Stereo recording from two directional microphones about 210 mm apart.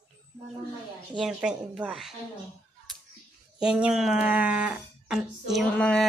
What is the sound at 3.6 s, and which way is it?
Speech, 5° right (ahead or behind).